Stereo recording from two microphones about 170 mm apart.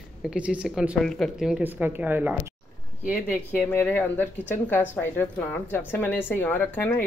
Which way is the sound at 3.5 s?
10° left (ahead or behind).